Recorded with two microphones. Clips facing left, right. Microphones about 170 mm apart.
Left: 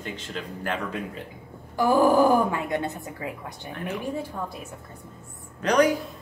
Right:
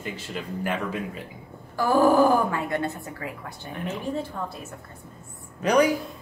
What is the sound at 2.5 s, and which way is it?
Speech, 20° left (ahead or behind).